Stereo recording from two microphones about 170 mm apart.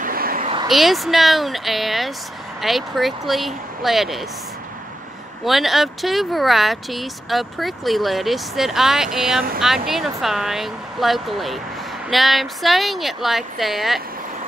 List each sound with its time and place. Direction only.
0.0 s a sound: 60° right (ahead or behind)
0.7 s speech: centre (ahead or behind)
5.4 s speech: centre (ahead or behind)